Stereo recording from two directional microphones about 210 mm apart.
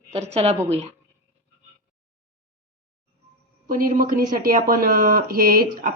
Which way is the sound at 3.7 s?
40° right (ahead or behind).